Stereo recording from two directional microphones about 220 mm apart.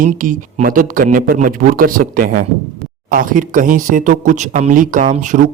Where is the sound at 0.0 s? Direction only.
40° right (ahead or behind).